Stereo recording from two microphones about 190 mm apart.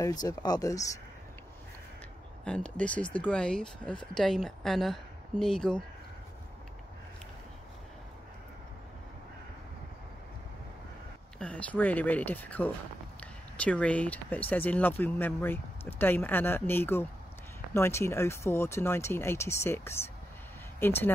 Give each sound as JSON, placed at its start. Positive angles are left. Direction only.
{"t": 0.0, "sound": "speech", "side_deg": 20}
{"t": 2.4, "sound": "speech", "side_deg": 5}
{"t": 11.3, "sound": "speech", "side_deg": 5}